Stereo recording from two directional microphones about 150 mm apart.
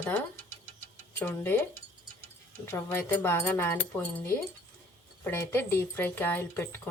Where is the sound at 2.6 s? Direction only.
15° left (ahead or behind).